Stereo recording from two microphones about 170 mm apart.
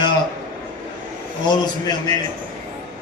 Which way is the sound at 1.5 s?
20° left (ahead or behind).